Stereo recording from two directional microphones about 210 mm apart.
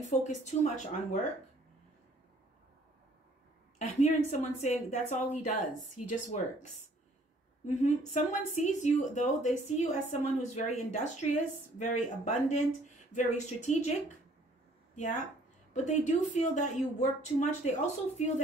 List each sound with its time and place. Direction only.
0.1 s speech: 35° left (ahead or behind)
3.7 s speech: 35° left (ahead or behind)
7.6 s speech: 35° left (ahead or behind)
15.0 s speech: 35° left (ahead or behind)